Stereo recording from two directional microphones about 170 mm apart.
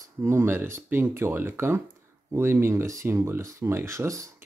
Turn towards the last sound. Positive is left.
turn(degrees=-20)  # may be behind; listen again after turning